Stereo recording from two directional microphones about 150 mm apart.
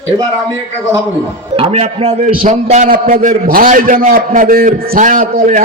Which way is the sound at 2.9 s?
60° right (ahead or behind).